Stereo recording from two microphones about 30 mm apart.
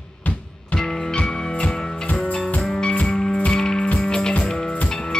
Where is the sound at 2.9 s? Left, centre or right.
Left.